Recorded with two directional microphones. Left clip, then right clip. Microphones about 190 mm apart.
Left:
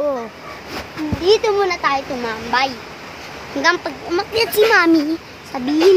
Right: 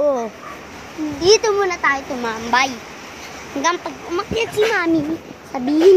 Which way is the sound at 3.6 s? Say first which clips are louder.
Left 3 dB; 10° left (ahead or behind).